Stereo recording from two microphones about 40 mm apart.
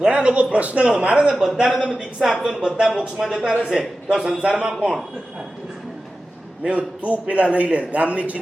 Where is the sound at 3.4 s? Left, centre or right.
Right.